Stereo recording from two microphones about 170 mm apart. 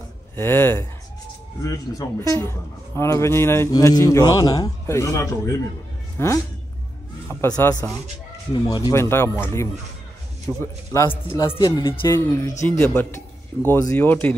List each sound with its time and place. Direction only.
0.4 s a man's voice: 15° left (ahead or behind)
10.6 s a man's voice: 15° left (ahead or behind)
11.9 s a man's voice: 15° left (ahead or behind)